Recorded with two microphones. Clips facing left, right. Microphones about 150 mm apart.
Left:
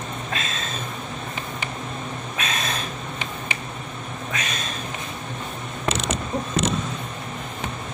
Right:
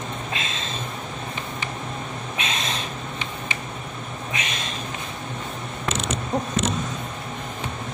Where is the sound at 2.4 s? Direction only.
25° right (ahead or behind).